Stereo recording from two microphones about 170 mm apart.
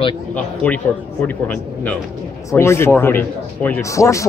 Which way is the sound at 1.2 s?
10° left (ahead or behind).